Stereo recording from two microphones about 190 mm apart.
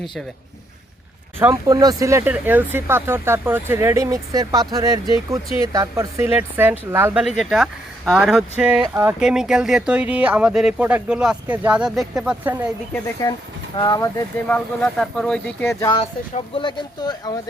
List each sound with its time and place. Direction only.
1.4 s speech: 15° right (ahead or behind)
13.7 s speech: 20° left (ahead or behind)
14.4 s speech: 5° left (ahead or behind)
16.0 s speech: 30° left (ahead or behind)